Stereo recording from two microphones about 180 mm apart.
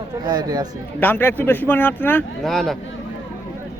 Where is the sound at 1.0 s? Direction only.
10° left (ahead or behind).